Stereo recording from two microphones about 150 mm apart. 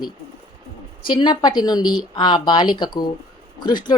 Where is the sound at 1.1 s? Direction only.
30° left (ahead or behind).